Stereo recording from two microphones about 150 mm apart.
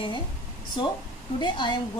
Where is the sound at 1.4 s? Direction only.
30° left (ahead or behind).